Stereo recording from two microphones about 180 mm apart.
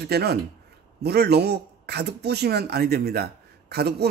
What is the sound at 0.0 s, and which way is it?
A man's voice, 65° right (ahead or behind).